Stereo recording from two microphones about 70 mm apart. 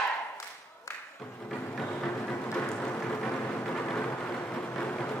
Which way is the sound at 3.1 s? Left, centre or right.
Centre.